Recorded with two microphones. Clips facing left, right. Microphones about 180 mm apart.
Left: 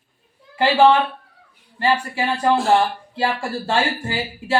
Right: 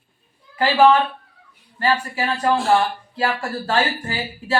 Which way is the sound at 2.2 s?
10° left (ahead or behind).